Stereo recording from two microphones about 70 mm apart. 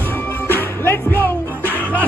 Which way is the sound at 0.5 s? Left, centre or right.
Left.